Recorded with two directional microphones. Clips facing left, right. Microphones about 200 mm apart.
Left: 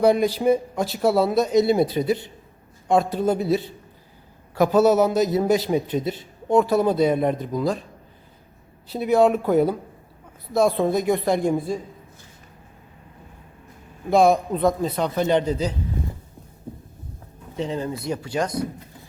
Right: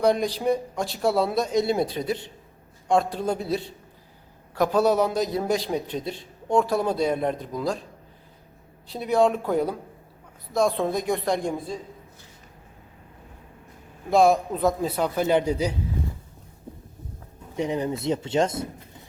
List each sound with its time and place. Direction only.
0.0 s a man's voice: 5° left (ahead or behind)
8.9 s a man's voice: 5° left (ahead or behind)
14.1 s a man's voice: centre (ahead or behind)
17.6 s speech: 15° right (ahead or behind)